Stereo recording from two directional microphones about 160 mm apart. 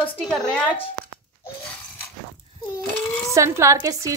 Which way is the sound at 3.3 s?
15° right (ahead or behind).